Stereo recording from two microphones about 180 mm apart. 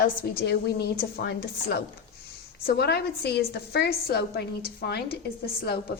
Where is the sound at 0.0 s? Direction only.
55° left (ahead or behind).